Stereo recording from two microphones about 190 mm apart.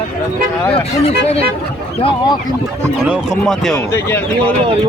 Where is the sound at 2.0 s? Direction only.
20° left (ahead or behind).